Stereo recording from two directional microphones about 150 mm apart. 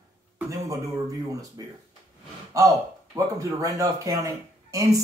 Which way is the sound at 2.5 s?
20° right (ahead or behind).